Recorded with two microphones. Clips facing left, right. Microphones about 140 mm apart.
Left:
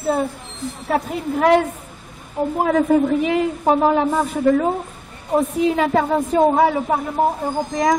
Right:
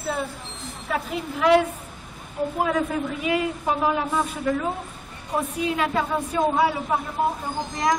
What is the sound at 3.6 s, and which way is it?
Speech, 40° left (ahead or behind).